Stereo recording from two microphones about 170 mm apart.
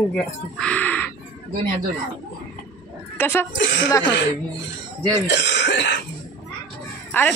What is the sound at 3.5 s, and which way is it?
Speech, 90° left.